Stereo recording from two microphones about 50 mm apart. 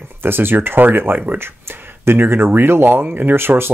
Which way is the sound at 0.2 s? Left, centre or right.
Right.